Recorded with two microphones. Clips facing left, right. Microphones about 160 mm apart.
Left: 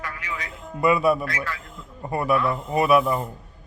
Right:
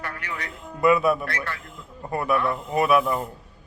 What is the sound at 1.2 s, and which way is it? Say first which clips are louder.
Speech: left 1 dB; 65° right (ahead or behind).